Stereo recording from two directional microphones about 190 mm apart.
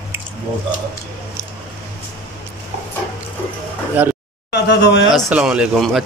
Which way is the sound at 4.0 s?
10° right (ahead or behind).